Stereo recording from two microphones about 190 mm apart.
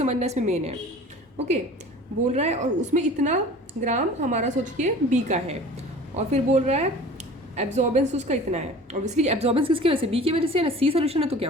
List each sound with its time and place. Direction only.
0.0 s a woman's voice: 35° right (ahead or behind)
2.3 s a woman's voice: 35° right (ahead or behind)